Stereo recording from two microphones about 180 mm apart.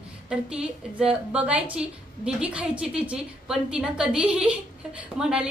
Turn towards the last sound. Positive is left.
turn(degrees=-5)  # may be behind; listen again after turning